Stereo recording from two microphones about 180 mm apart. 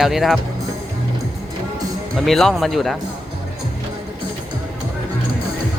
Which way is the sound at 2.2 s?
Centre (ahead or behind).